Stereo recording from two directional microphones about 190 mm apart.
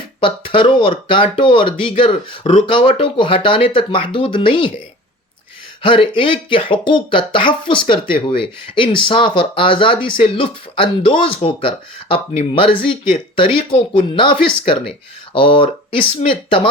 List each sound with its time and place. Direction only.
0.2 s speech: 25° left (ahead or behind)
5.8 s speech: 25° left (ahead or behind)